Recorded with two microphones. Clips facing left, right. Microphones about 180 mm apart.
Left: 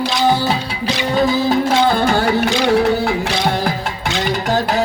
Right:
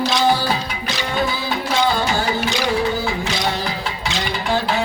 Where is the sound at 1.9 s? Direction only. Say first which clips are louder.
Left 5 dB; 55° left (ahead or behind).